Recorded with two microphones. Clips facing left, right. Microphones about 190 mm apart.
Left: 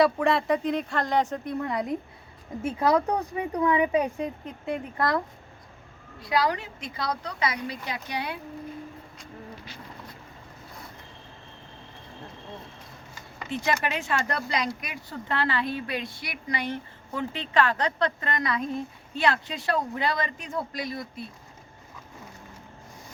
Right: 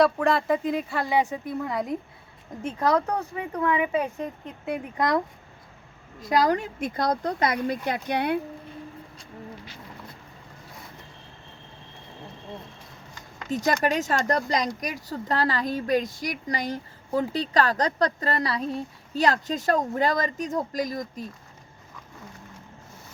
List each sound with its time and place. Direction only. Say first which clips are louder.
0.0 s speech: right 1 dB; centre (ahead or behind)
2.6 s speech: left 1 dB; 10° left (ahead or behind)
4.9 s speech: right 3 dB; 20° right (ahead or behind)
6.1 s speech: right 4 dB; 45° right (ahead or behind)
13.5 s speech: right 4 dB; 40° right (ahead or behind)